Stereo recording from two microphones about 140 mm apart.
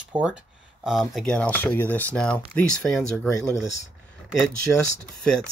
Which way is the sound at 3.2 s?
20° left (ahead or behind).